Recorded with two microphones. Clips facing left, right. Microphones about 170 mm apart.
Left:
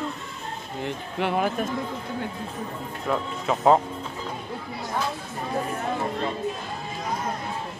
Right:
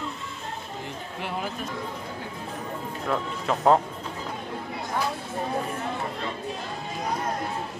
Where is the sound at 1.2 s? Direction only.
60° left (ahead or behind).